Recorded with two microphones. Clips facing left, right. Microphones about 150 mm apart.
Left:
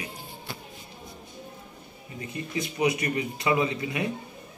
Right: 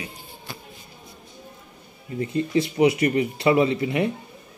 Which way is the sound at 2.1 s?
30° right (ahead or behind).